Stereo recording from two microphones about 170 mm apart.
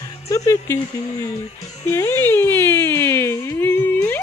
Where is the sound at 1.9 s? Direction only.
15° left (ahead or behind).